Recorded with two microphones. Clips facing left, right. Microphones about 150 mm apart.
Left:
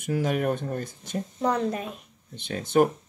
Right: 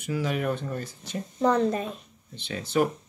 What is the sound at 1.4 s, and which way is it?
Speech, 5° left (ahead or behind).